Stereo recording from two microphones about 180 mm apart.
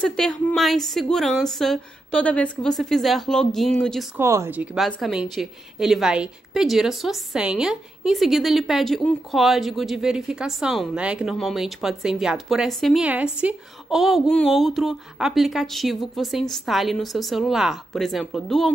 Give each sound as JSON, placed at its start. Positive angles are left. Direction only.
{"t": 0.0, "sound": "a woman's voice", "side_deg": 5}
{"t": 4.2, "sound": "a woman's voice", "side_deg": -15}